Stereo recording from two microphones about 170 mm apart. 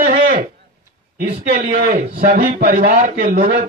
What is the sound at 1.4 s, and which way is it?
Speech, 55° right (ahead or behind).